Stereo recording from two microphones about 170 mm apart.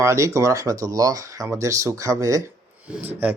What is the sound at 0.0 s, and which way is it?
Speech, 20° right (ahead or behind).